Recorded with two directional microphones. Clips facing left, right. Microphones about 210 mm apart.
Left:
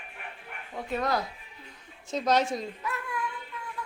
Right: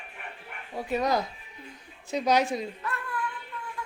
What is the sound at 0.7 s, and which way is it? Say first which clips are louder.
Speech: right 3 dB; 15° right (ahead or behind).